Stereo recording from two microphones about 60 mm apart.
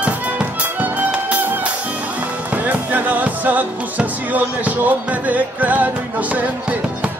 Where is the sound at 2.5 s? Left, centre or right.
Right.